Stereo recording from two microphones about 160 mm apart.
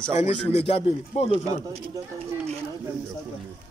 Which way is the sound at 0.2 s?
45° left (ahead or behind).